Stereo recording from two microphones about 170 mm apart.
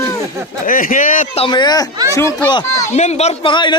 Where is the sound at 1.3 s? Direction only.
30° left (ahead or behind).